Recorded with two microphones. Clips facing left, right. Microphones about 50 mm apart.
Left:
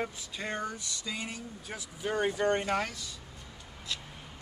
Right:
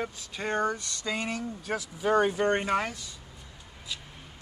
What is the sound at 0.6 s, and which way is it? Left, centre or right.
Speech, right.